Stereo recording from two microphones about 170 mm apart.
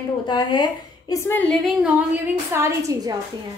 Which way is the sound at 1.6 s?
5° right (ahead or behind).